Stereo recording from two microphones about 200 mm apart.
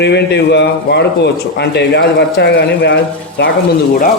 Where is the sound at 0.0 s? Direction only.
60° left (ahead or behind).